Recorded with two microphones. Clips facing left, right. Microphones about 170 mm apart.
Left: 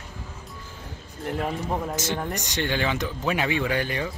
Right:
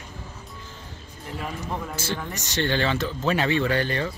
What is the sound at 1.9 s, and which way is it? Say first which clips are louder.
Speech: left 3 dB; 20° left (ahead or behind).